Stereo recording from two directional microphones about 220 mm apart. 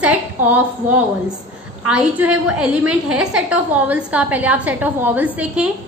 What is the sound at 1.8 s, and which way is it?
A woman's voice, 5° right (ahead or behind).